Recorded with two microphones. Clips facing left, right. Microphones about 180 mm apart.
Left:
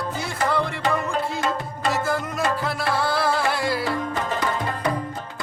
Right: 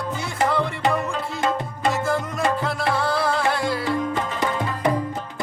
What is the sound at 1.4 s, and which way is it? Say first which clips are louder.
Music: right 2 dB; 20° right (ahead or behind).